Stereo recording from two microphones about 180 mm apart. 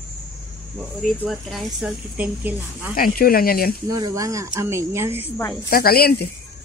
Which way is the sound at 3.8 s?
20° right (ahead or behind).